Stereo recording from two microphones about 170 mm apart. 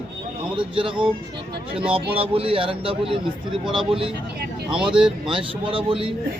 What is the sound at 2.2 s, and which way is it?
A man's voice, 35° right (ahead or behind).